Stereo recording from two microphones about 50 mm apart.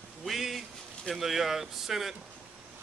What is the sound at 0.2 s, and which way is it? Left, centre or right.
Speech, centre.